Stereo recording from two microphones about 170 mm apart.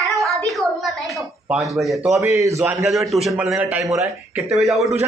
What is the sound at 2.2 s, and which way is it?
Speech, 20° right (ahead or behind).